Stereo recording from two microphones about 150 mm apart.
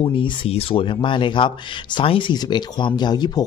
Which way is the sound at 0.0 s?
35° left (ahead or behind).